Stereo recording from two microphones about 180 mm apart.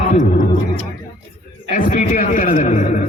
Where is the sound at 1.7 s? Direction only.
45° left (ahead or behind).